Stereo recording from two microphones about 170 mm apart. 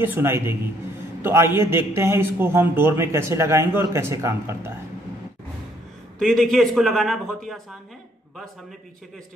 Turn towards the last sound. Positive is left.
turn(degrees=0)  # may be behind; listen again after turning